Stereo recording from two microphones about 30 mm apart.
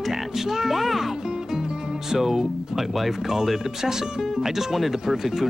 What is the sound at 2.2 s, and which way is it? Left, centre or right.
Speech, centre.